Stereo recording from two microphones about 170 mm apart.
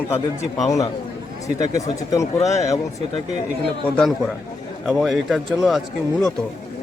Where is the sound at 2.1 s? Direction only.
20° left (ahead or behind).